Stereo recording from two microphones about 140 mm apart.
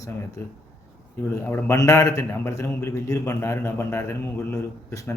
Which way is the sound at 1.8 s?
25° left (ahead or behind).